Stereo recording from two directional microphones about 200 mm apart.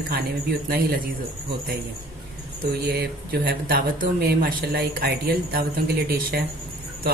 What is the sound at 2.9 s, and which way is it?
A man's voice, 50° right (ahead or behind).